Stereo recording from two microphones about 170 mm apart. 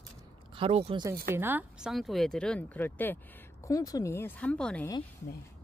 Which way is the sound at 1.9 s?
Centre (ahead or behind).